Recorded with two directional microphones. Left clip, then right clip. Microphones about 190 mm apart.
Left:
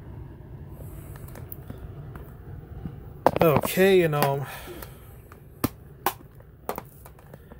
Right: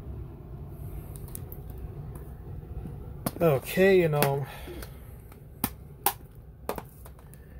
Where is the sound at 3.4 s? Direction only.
20° left (ahead or behind).